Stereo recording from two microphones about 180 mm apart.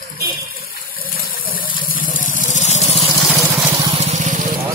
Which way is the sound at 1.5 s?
50° left (ahead or behind).